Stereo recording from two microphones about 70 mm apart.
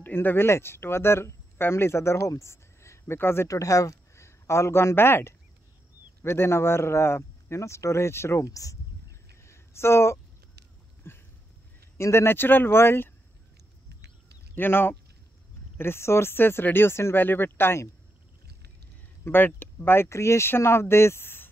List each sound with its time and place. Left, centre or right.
0.0 s speech: left
3.4 s a man's voice: left
9.4 s a sound: left
12.0 s speech: left
14.5 s speech: left
19.2 s speech: left